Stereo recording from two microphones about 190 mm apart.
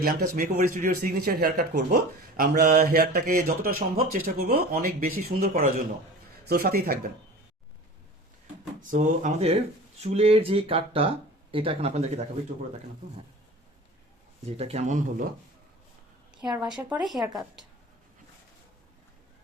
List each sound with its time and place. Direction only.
0.0 s speech: 50° right (ahead or behind)
8.9 s speech: 40° right (ahead or behind)
14.4 s speech: 35° right (ahead or behind)
16.4 s a woman's voice: 5° right (ahead or behind)